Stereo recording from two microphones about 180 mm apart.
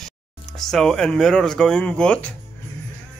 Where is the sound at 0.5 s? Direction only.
Centre (ahead or behind).